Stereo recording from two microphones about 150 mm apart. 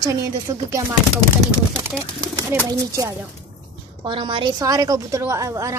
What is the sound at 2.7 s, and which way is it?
Speech, 20° right (ahead or behind).